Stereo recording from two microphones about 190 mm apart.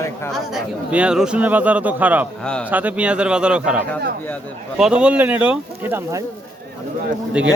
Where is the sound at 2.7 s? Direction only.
10° right (ahead or behind).